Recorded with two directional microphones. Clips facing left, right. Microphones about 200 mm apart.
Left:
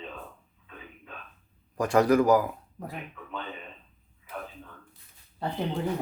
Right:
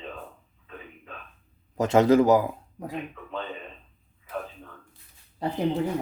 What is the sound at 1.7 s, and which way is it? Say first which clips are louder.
Speech: right 3 dB; 25° right (ahead or behind).